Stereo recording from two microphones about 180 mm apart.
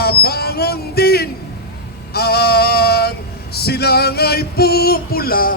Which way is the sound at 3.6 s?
60° left (ahead or behind).